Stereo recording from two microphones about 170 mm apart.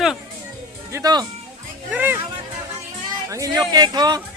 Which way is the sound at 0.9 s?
20° right (ahead or behind).